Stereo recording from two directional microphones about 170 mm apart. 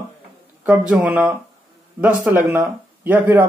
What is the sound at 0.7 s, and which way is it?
Speech, 10° right (ahead or behind).